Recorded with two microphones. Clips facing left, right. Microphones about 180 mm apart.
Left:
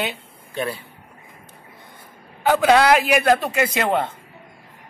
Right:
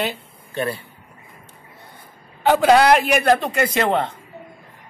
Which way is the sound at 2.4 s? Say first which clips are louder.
Right 2 dB; centre (ahead or behind).